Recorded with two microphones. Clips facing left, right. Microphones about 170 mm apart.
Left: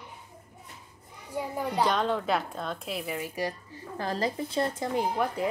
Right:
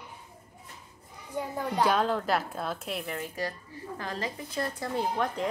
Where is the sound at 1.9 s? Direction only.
5° right (ahead or behind).